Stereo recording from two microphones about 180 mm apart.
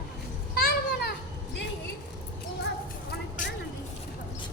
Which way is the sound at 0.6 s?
65° left (ahead or behind).